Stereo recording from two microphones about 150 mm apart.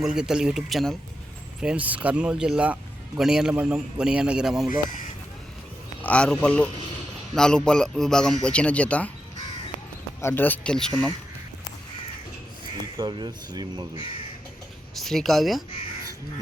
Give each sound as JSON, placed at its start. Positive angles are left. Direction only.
{"t": 0.0, "sound": "a man's voice", "side_deg": -5}
{"t": 6.0, "sound": "a man's voice", "side_deg": 10}
{"t": 10.2, "sound": "speech", "side_deg": 15}
{"t": 13.0, "sound": "speech", "side_deg": -30}
{"t": 14.9, "sound": "speech", "side_deg": 0}